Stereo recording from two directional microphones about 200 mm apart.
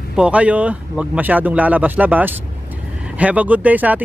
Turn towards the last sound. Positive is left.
turn(degrees=-10)  # may be behind; listen again after turning